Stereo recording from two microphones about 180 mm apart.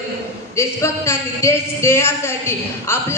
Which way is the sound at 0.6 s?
15° left (ahead or behind).